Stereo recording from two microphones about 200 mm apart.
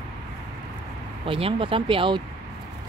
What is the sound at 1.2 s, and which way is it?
Speech, 25° right (ahead or behind).